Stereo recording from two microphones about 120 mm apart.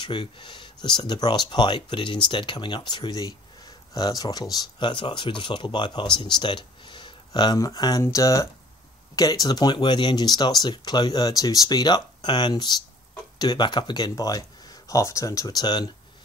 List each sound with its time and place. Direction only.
0.0 s speech: 40° left (ahead or behind)